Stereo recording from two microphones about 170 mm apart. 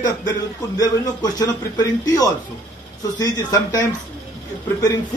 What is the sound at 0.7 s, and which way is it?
A man's voice, 20° left (ahead or behind).